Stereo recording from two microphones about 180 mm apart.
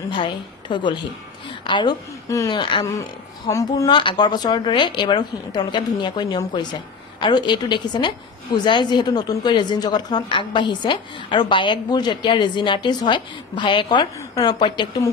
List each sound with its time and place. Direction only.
0.1 s a woman's voice: 25° left (ahead or behind)